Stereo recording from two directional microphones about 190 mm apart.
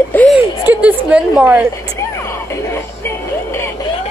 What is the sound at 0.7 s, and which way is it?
A woman's voice, 10° right (ahead or behind).